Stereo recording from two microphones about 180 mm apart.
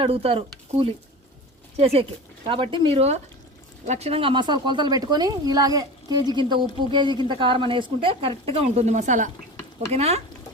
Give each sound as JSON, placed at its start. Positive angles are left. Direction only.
{"t": 0.0, "sound": "a woman's voice", "side_deg": -30}